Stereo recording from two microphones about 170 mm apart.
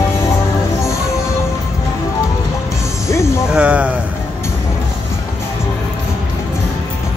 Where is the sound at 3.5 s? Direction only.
5° right (ahead or behind).